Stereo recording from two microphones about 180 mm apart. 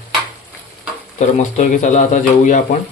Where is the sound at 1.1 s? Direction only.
40° left (ahead or behind).